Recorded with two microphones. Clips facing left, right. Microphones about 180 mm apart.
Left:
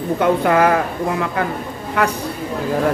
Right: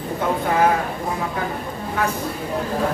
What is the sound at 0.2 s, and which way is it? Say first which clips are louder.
Speech: left 4 dB; 75° left (ahead or behind).